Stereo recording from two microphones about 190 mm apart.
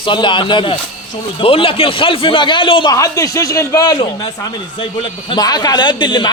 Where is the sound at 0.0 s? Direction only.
25° left (ahead or behind).